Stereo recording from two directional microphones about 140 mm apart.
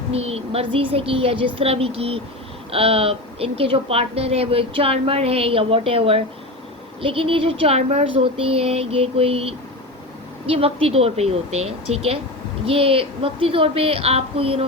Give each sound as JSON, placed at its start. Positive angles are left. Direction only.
{"t": 0.1, "sound": "a woman's voice", "side_deg": -45}